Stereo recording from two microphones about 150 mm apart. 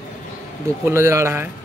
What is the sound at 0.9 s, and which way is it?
Speech, 20° right (ahead or behind).